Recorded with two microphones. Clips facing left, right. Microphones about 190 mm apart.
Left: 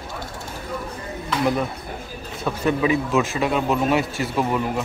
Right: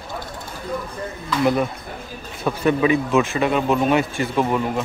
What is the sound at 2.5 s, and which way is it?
Speech, 45° right (ahead or behind).